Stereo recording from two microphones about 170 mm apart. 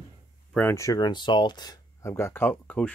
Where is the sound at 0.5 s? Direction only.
15° left (ahead or behind).